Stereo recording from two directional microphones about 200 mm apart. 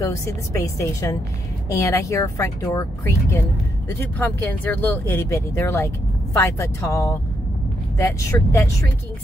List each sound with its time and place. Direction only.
0.0 s speech: 15° left (ahead or behind)